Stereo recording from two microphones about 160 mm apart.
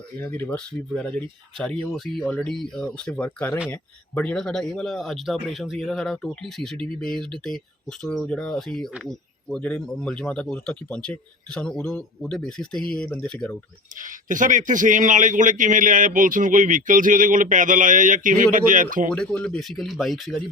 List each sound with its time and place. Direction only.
0.2 s speech: 15° left (ahead or behind)
13.9 s a man's voice: 55° right (ahead or behind)
19.1 s speech: 5° left (ahead or behind)